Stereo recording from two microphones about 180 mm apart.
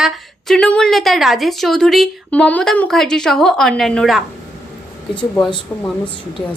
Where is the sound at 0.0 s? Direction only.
Centre (ahead or behind).